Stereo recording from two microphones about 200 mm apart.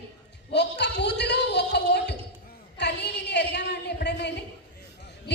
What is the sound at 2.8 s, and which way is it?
A woman's voice, 60° left (ahead or behind).